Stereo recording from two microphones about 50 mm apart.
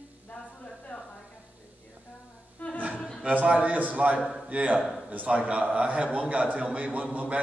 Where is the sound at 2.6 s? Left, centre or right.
Left.